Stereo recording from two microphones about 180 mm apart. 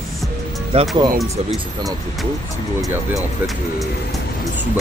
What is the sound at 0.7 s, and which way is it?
Speech, 35° right (ahead or behind).